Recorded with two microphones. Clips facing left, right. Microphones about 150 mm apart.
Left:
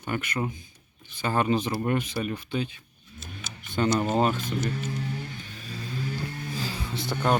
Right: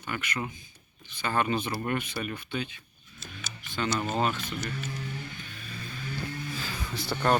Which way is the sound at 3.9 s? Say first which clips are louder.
Left 5 dB; 20° left (ahead or behind).